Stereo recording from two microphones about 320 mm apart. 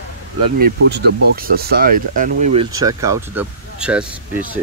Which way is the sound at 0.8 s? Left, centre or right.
Right.